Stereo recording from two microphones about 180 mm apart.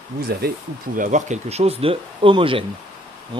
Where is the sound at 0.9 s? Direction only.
40° right (ahead or behind).